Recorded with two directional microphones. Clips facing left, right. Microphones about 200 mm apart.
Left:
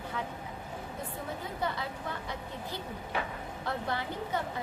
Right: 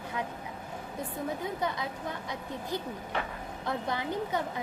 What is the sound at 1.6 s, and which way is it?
A woman's voice, 15° right (ahead or behind).